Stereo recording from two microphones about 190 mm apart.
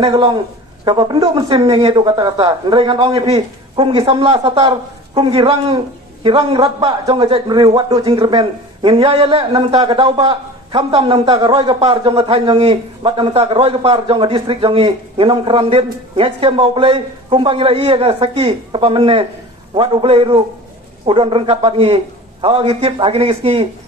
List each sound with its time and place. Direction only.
0.0 s a man's voice: 25° right (ahead or behind)